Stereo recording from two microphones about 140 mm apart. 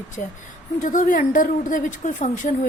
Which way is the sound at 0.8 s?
70° left (ahead or behind).